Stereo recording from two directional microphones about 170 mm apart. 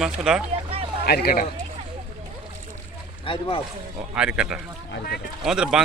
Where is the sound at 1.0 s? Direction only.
65° left (ahead or behind).